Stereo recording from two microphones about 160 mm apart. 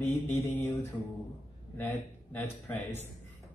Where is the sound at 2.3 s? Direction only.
10° left (ahead or behind).